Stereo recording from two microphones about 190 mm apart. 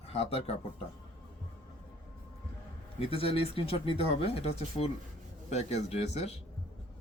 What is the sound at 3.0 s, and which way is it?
Speech, 30° left (ahead or behind).